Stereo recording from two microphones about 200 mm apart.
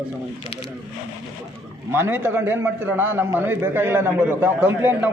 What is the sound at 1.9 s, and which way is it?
A man's voice, 10° right (ahead or behind).